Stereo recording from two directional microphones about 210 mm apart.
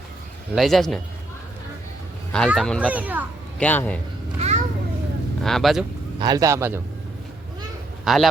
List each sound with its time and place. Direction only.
0.5 s a man's voice: centre (ahead or behind)
2.5 s a man's voice: centre (ahead or behind)
3.6 s a man's voice: 5° left (ahead or behind)
4.4 s children playing: 30° right (ahead or behind)
5.4 s speech: centre (ahead or behind)
6.1 s a man's voice: 20° right (ahead or behind)
8.0 s a man's voice: centre (ahead or behind)